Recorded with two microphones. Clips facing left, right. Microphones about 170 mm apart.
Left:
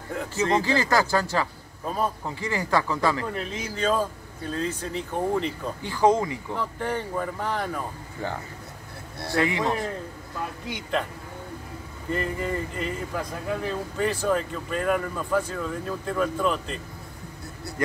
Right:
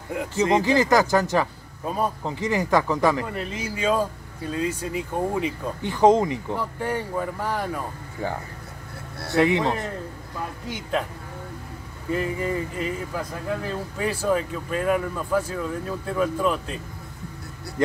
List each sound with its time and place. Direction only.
0.1 s speech: 15° right (ahead or behind)
5.8 s speech: 20° right (ahead or behind)
9.3 s speech: 20° right (ahead or behind)
10.7 s speech: 5° right (ahead or behind)
12.1 s speech: 5° right (ahead or behind)